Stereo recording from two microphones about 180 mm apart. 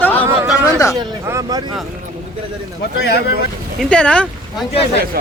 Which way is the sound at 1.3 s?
20° right (ahead or behind).